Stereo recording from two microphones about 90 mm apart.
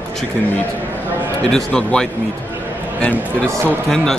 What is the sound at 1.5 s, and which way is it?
Speech, 10° left (ahead or behind).